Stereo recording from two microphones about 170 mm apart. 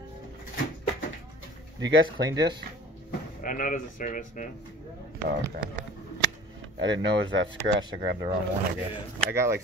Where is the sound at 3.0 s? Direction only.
55° left (ahead or behind).